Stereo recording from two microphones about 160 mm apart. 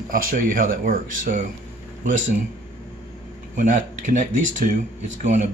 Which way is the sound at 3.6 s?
50° right (ahead or behind).